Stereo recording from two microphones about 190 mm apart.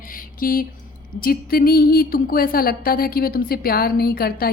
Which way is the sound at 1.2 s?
50° left (ahead or behind).